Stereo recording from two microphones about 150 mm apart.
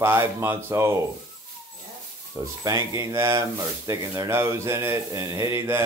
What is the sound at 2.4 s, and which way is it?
Speech, 20° right (ahead or behind).